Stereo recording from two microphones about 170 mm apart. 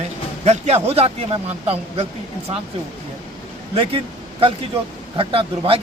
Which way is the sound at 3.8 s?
35° right (ahead or behind).